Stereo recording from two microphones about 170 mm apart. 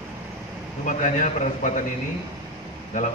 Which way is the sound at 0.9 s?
50° left (ahead or behind).